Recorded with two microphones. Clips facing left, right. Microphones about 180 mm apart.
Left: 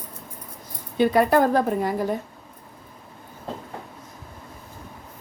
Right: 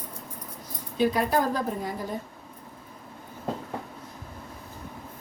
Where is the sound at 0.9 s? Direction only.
60° left (ahead or behind).